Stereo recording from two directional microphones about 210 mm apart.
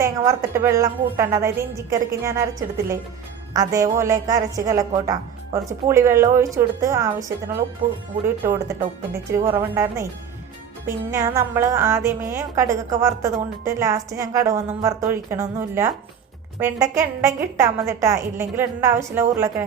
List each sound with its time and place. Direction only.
0.0 s a woman's voice: 15° right (ahead or behind)